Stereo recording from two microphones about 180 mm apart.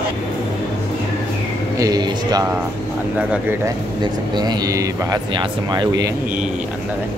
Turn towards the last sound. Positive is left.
turn(degrees=-20)  # may be behind; listen again after turning